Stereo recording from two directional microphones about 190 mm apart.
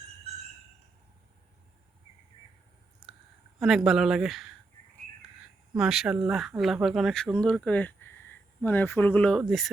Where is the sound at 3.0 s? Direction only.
5° right (ahead or behind).